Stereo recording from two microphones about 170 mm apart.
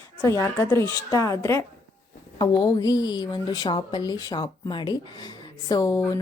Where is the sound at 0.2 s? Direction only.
15° left (ahead or behind).